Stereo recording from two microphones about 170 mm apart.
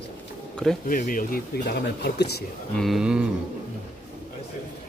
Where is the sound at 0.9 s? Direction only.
50° left (ahead or behind); by 2.4 s 75° left (ahead or behind).